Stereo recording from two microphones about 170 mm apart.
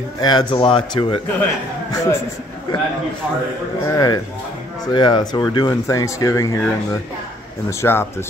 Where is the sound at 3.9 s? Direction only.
20° left (ahead or behind).